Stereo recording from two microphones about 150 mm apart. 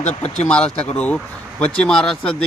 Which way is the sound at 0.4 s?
5° left (ahead or behind).